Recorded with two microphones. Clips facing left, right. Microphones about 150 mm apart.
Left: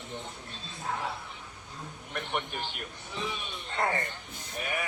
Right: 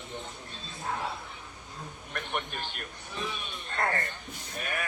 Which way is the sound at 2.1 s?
20° left (ahead or behind).